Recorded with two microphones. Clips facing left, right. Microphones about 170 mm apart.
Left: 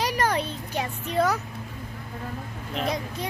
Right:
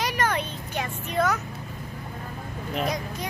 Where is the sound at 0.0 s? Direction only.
35° left (ahead or behind).